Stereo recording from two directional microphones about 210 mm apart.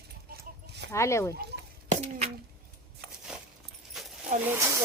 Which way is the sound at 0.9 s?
15° left (ahead or behind).